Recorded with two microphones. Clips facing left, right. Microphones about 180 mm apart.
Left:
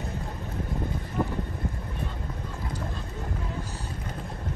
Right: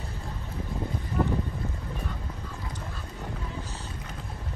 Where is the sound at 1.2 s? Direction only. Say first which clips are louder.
Right 1 dB; 10° left (ahead or behind).